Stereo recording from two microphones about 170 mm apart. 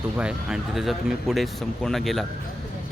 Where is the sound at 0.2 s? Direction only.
5° right (ahead or behind).